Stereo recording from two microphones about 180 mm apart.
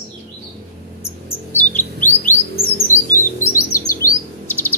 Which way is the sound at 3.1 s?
50° left (ahead or behind).